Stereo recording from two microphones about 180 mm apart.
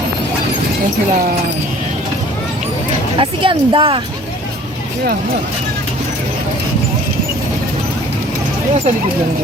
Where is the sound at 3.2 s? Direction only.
30° right (ahead or behind).